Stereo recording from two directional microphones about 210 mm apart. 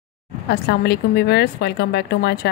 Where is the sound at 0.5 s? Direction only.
50° left (ahead or behind).